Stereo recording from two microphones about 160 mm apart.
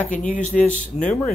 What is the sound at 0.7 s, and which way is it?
Speech, 10° left (ahead or behind).